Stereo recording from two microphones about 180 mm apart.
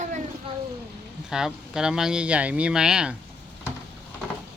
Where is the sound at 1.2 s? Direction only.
5° right (ahead or behind).